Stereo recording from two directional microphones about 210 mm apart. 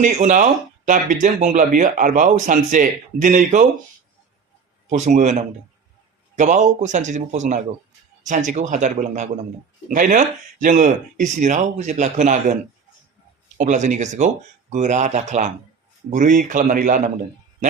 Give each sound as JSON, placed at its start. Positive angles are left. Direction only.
{"t": 0.0, "sound": "speech", "side_deg": -35}
{"t": 4.9, "sound": "speech", "side_deg": -35}
{"t": 13.6, "sound": "speech", "side_deg": -35}